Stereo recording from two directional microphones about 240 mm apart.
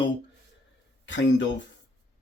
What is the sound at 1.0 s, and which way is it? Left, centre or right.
Speech, left.